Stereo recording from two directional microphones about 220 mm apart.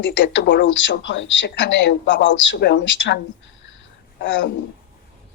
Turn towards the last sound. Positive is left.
turn(degrees=55)  # may be behind; listen again after turning